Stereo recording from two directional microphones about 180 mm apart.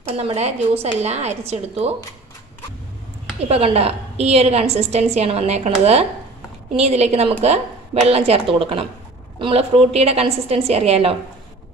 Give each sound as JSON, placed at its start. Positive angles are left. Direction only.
{"t": 0.1, "sound": "a woman's voice", "side_deg": -35}
{"t": 3.4, "sound": "a woman's voice", "side_deg": -35}